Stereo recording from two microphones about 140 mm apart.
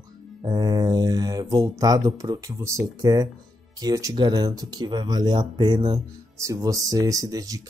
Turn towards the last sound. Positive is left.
turn(degrees=-25)  # may be behind; listen again after turning